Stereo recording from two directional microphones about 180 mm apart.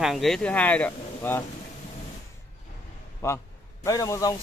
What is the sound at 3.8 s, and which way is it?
Speech, 20° left (ahead or behind).